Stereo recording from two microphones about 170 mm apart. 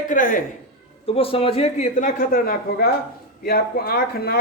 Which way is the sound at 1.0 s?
35° left (ahead or behind).